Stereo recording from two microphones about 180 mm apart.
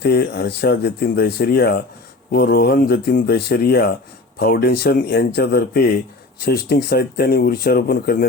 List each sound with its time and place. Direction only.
0.0 s speech: 60° left (ahead or behind)